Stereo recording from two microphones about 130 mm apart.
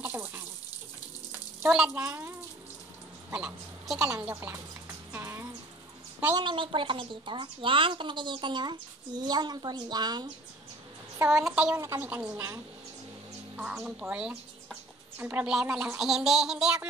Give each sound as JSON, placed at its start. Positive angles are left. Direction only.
{"t": 0.0, "sound": "water tap", "side_deg": -15}
{"t": 1.7, "sound": "speech", "side_deg": -5}
{"t": 2.0, "sound": "speech", "side_deg": -20}
{"t": 3.3, "sound": "a woman's voice", "side_deg": -10}
{"t": 5.1, "sound": "music", "side_deg": -20}
{"t": 6.3, "sound": "a woman's voice", "side_deg": -40}
{"t": 11.4, "sound": "a woman's voice", "side_deg": -10}
{"t": 13.8, "sound": "speech", "side_deg": -10}